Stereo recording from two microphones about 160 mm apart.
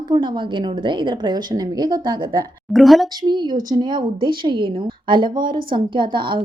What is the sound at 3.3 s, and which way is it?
A woman's voice, 30° right (ahead or behind).